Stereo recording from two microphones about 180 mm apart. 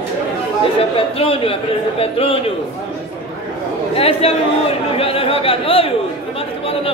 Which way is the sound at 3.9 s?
35° left (ahead or behind).